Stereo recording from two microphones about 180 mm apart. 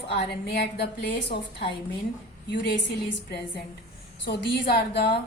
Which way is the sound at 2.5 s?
70° left (ahead or behind).